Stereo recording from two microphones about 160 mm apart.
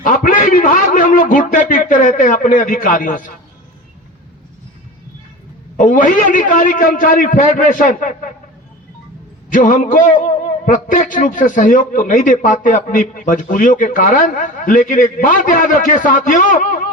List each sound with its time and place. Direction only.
0.0 s a sound: 55° left (ahead or behind)
5.7 s a man's voice: 55° left (ahead or behind)
9.5 s a man's voice: 55° left (ahead or behind)